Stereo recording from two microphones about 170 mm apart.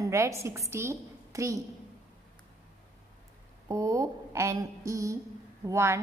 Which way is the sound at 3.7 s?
20° right (ahead or behind).